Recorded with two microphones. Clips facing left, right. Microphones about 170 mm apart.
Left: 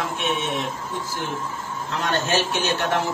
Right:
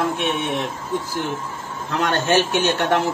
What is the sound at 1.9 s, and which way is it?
A man's voice, 60° right (ahead or behind).